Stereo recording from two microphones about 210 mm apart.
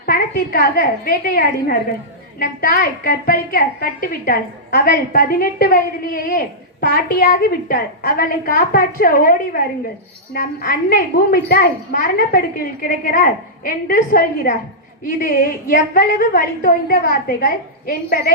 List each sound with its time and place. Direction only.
0.0 s a woman's voice: 45° left (ahead or behind)
16.0 s a woman's voice: 45° left (ahead or behind)